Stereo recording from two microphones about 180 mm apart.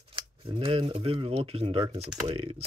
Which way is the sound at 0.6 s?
30° right (ahead or behind).